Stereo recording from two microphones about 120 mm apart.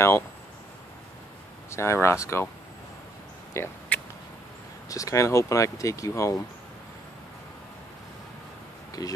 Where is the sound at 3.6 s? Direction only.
25° left (ahead or behind).